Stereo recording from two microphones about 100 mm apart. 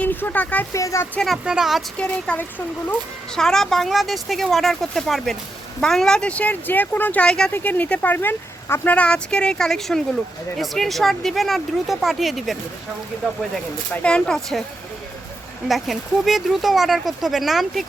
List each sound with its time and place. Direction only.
0.0 s speech: 20° left (ahead or behind)
0.7 s speech: 30° left (ahead or behind)
1.2 s speech: 5° right (ahead or behind)
2.0 s speech: 10° left (ahead or behind)
3.3 s speech: 5° left (ahead or behind)
13.9 s speech: 10° left (ahead or behind)
15.6 s speech: centre (ahead or behind)